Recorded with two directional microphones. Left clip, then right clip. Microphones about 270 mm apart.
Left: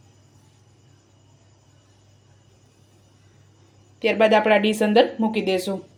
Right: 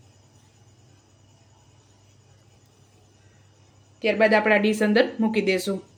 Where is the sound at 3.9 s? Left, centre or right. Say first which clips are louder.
Left 2 dB; centre.